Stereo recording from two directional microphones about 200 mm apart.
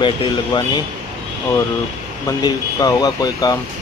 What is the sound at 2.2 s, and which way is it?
Speech, 20° left (ahead or behind).